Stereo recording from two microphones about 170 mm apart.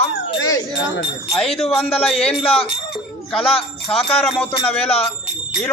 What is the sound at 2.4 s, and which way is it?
Speech, 35° left (ahead or behind).